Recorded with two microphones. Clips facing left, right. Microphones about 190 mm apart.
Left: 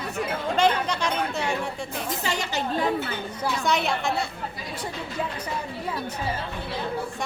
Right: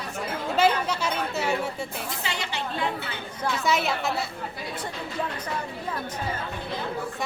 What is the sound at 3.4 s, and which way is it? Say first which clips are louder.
Speech: even; centre (ahead or behind).